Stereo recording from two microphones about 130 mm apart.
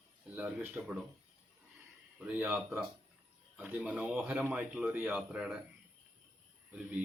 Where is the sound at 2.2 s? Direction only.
10° right (ahead or behind).